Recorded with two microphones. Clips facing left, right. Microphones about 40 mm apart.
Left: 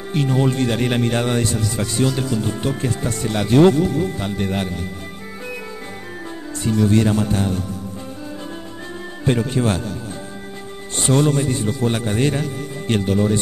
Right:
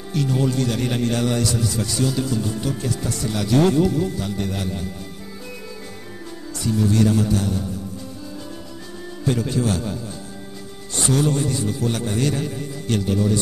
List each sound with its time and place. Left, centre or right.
0.1 s speech: left
6.6 s speech: left
9.2 s speech: left
11.1 s speech: left